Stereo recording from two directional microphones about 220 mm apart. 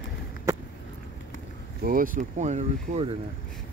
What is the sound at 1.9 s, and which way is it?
Speech, 40° right (ahead or behind).